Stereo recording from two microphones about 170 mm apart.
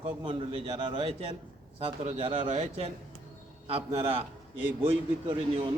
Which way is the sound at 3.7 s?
35° right (ahead or behind).